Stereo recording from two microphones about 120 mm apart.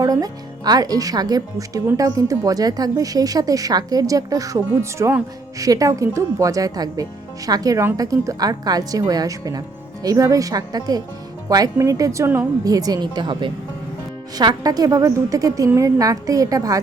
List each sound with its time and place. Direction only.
0.0 s speech: 30° right (ahead or behind)
12.6 s speech: 30° right (ahead or behind)